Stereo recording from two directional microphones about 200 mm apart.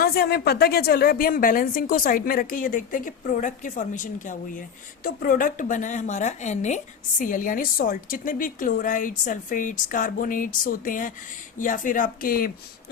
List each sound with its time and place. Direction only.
0.0 s a woman's voice: 50° left (ahead or behind)